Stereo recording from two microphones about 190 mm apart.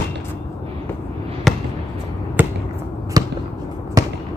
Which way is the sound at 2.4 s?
10° right (ahead or behind).